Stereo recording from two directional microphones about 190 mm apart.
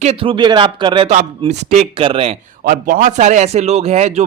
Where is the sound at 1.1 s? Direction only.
40° right (ahead or behind).